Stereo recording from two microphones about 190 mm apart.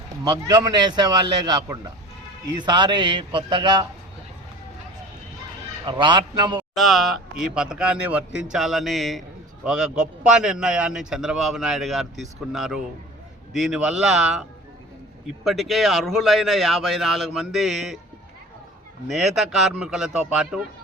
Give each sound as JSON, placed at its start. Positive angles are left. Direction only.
{"t": 0.3, "sound": "speech", "side_deg": -20}
{"t": 5.8, "sound": "speech", "side_deg": -25}
{"t": 6.6, "sound": "speech", "side_deg": 0}
{"t": 15.4, "sound": "speech", "side_deg": 0}
{"t": 19.0, "sound": "speech", "side_deg": 0}